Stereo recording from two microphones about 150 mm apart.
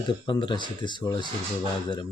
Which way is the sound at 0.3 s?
30° left (ahead or behind).